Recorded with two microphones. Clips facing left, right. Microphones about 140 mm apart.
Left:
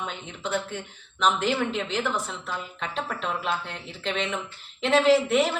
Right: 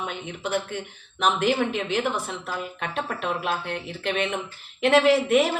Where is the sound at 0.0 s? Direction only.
60° right (ahead or behind).